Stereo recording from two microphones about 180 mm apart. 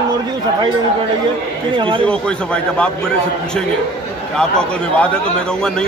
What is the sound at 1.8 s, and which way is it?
Speech, 30° right (ahead or behind).